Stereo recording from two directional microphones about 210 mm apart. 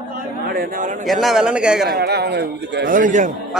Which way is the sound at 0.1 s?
45° right (ahead or behind).